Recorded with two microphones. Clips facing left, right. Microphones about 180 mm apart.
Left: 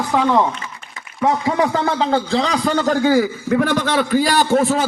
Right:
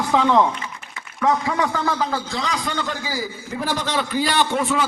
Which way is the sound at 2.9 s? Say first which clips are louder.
Left 13 dB; 60° left (ahead or behind).